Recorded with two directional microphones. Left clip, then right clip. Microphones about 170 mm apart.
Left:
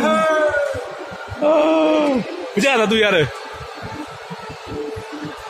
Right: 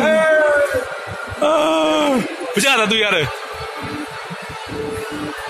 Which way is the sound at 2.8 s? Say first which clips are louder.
Left 1 dB; 25° left (ahead or behind).